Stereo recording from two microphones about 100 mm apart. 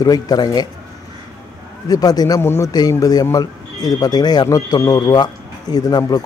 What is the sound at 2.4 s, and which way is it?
Speech, 25° left (ahead or behind).